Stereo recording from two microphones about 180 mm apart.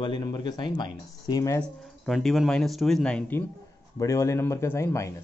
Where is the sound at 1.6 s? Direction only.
Centre (ahead or behind).